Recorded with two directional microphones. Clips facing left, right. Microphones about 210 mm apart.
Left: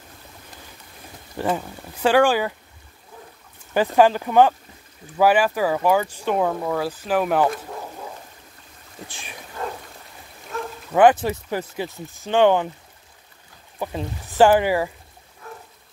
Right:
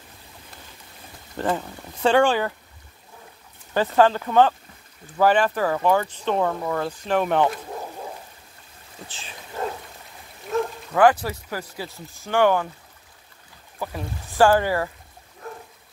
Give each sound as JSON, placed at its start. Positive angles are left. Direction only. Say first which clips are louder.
{"t": 1.3, "sound": "speech", "louder": "left 1 dB", "side_deg": 15}
{"t": 3.7, "sound": "speech", "louder": "left 2 dB", "side_deg": 15}
{"t": 9.1, "sound": "speech", "louder": "left 2 dB", "side_deg": 15}
{"t": 10.9, "sound": "speech", "louder": "left 3 dB", "side_deg": 20}
{"t": 13.7, "sound": "speech", "louder": "left 3 dB", "side_deg": 20}